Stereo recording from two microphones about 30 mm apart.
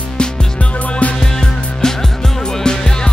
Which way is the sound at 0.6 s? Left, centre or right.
Left.